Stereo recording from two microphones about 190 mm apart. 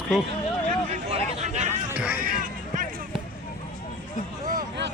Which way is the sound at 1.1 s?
35° right (ahead or behind).